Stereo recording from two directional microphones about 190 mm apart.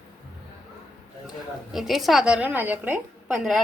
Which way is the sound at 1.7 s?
Centre (ahead or behind).